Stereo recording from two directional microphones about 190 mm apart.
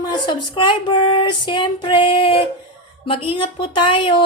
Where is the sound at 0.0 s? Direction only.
20° left (ahead or behind).